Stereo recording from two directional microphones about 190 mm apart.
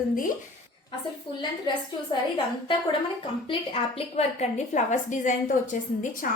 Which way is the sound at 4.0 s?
35° left (ahead or behind).